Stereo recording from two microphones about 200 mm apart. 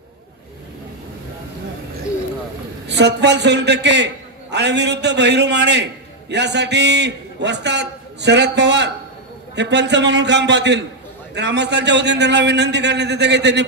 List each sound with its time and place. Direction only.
2.9 s a man's voice: 60° right (ahead or behind)